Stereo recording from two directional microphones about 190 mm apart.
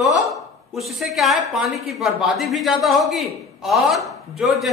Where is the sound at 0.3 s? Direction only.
Centre (ahead or behind).